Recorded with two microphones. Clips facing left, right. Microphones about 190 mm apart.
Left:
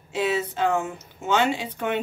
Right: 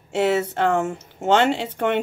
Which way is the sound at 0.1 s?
75° right (ahead or behind).